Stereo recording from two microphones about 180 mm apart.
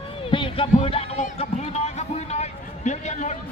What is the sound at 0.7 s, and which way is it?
Music, 30° left (ahead or behind).